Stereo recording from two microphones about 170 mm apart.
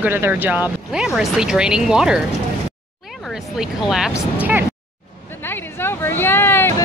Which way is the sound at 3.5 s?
5° right (ahead or behind).